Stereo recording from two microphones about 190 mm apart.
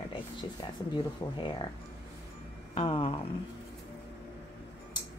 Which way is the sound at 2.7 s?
30° left (ahead or behind).